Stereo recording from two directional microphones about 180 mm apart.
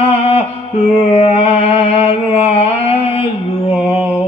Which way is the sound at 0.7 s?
35° left (ahead or behind).